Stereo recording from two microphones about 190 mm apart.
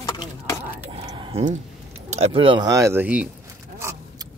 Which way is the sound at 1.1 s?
25° right (ahead or behind).